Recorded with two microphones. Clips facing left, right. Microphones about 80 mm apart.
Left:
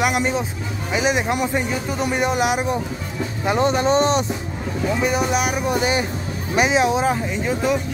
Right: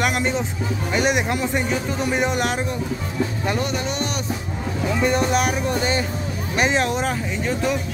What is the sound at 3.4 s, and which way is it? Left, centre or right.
Speech, left.